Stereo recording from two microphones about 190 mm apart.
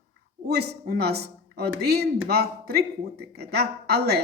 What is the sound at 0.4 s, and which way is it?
A woman's voice, 60° right (ahead or behind).